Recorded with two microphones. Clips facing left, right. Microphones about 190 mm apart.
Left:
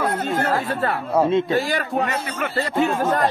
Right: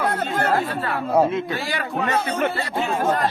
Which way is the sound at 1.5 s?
40° left (ahead or behind).